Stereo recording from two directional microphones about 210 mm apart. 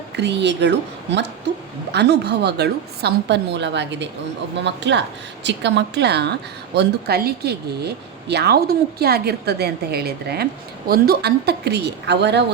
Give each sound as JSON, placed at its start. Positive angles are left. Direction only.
{"t": 0.2, "sound": "a woman's voice", "side_deg": -55}